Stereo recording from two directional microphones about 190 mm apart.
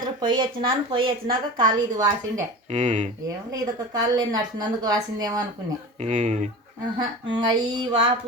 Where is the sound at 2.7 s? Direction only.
40° right (ahead or behind).